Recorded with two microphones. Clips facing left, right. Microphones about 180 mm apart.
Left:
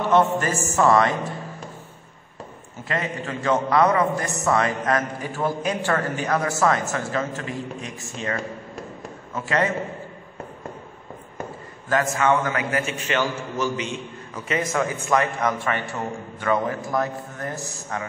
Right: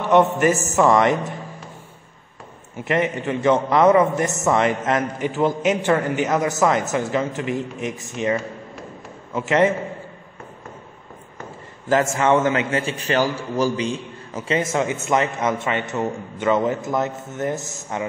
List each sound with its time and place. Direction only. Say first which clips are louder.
0.1 s a man's voice: right 5 dB; 20° right (ahead or behind)
2.8 s a man's voice: right 6 dB; 20° right (ahead or behind)
9.3 s a man's voice: right 6 dB; 20° right (ahead or behind)
11.9 s a man's voice: right 3 dB; 25° right (ahead or behind)